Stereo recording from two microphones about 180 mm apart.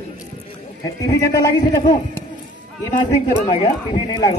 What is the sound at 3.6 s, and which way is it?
Speech, 25° left (ahead or behind).